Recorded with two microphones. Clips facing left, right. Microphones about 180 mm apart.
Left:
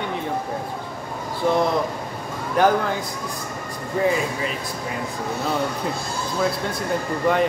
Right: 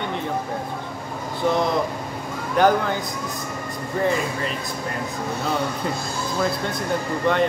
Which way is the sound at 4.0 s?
5° left (ahead or behind).